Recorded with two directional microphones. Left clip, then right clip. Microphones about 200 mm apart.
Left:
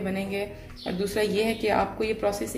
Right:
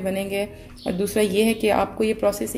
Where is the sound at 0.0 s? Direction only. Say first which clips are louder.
Right 5 dB; 35° right (ahead or behind).